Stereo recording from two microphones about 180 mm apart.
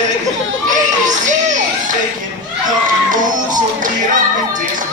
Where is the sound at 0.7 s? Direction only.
45° right (ahead or behind).